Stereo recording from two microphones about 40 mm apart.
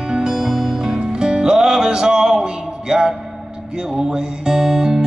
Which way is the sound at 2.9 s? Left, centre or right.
Centre.